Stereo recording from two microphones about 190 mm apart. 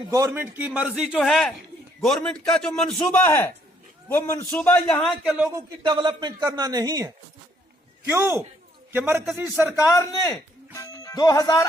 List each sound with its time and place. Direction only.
0.1 s a man's voice: 15° right (ahead or behind)
5.5 s a man's voice: 20° right (ahead or behind)
9.7 s a man's voice: 15° left (ahead or behind)
10.8 s music: 15° left (ahead or behind)